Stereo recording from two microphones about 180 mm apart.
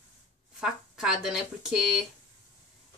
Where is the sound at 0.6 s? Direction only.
5° right (ahead or behind).